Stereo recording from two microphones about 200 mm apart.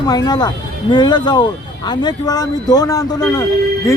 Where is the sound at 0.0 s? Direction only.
20° left (ahead or behind).